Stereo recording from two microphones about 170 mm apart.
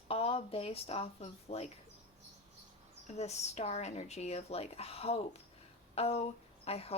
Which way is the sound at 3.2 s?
40° left (ahead or behind).